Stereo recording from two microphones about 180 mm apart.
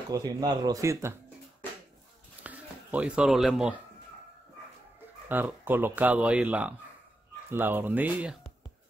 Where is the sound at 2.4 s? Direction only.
10° right (ahead or behind).